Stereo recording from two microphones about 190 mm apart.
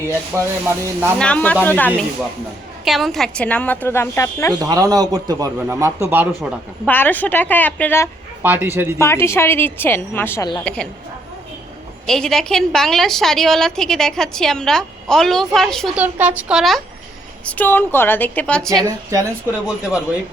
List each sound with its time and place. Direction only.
0.3 s a man's voice: 10° right (ahead or behind)
1.2 s a woman's voice: 5° left (ahead or behind)
4.6 s a man's voice: 20° right (ahead or behind)
6.8 s a woman's voice: 10° left (ahead or behind)
8.4 s a man's voice: 10° right (ahead or behind)
9.0 s a woman's voice: 15° left (ahead or behind)
12.0 s a woman's voice: centre (ahead or behind)
18.8 s a man's voice: 15° right (ahead or behind)